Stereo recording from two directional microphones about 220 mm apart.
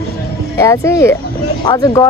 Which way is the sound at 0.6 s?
10° left (ahead or behind).